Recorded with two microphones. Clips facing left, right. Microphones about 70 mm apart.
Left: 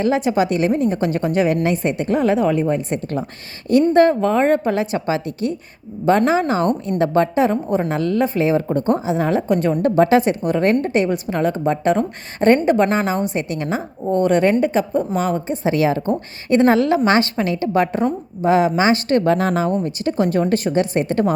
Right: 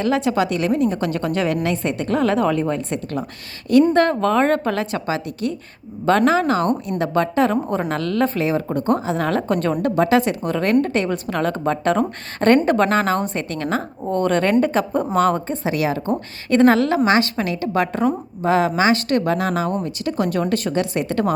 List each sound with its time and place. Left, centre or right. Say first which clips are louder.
0.0 s a woman's voice: left 2 dB; left
7.7 s a woman's voice: left 3 dB; centre
8.4 s a woman's voice: left 3 dB; left
9.0 s a woman's voice: left 2 dB; centre
9.8 s a woman's voice: left 3 dB; left; by 15.5 s centre
15.6 s a woman's voice: left 5 dB; left